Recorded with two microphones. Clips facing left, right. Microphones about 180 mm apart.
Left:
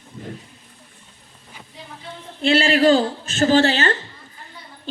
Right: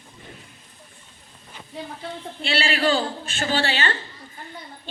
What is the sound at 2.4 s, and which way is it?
A woman's voice, 45° left (ahead or behind).